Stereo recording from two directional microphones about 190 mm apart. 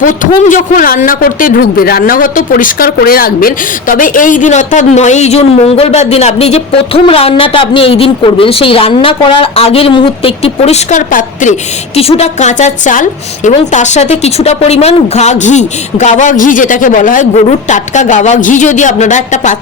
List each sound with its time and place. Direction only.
0.0 s a man's voice: 45° left (ahead or behind)